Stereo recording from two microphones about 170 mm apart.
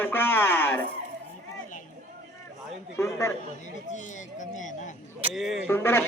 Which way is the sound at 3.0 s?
15° left (ahead or behind).